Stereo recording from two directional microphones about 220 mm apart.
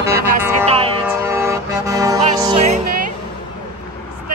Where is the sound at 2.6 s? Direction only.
30° right (ahead or behind).